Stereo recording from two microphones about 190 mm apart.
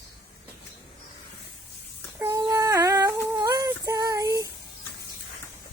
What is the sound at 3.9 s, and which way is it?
Child singing, 15° right (ahead or behind).